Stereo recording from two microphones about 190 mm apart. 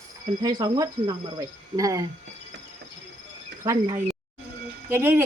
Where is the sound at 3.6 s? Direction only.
20° right (ahead or behind).